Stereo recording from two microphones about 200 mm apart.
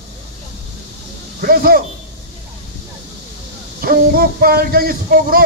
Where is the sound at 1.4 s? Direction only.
45° right (ahead or behind).